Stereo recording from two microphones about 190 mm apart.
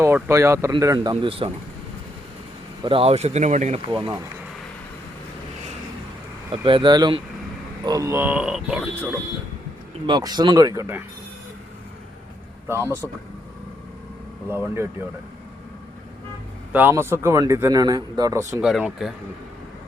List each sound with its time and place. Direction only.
0.0 s a man's voice: 15° right (ahead or behind); by 1.5 s 30° right (ahead or behind)
2.8 s speech: 30° right (ahead or behind)
3.9 s speech: 25° right (ahead or behind)
6.5 s a man's voice: 25° right (ahead or behind); by 9.0 s 5° right (ahead or behind)
10.1 s speech: 20° right (ahead or behind)
12.6 s a man's voice: 15° right (ahead or behind)
14.5 s a man's voice: 10° right (ahead or behind)
16.7 s a man's voice: 10° right (ahead or behind)
18.6 s speech: 5° right (ahead or behind)